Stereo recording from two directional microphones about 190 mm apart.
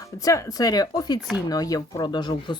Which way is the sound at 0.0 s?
15° left (ahead or behind).